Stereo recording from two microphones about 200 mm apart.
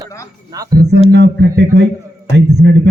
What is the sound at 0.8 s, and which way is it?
A man's voice, 55° right (ahead or behind).